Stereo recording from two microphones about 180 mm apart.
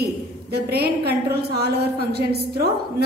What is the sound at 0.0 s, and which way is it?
A woman's voice, 65° right (ahead or behind).